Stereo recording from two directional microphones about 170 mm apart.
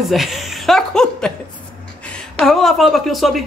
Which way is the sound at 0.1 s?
Centre (ahead or behind).